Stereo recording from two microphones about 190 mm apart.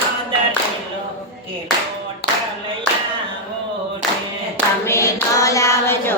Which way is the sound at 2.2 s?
60° left (ahead or behind).